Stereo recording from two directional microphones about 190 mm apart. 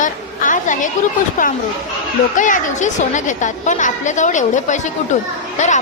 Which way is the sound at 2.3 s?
40° left (ahead or behind).